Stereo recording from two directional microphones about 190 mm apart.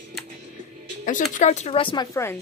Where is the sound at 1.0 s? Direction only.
40° left (ahead or behind).